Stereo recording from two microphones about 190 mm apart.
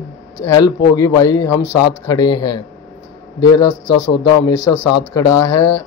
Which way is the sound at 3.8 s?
70° left (ahead or behind).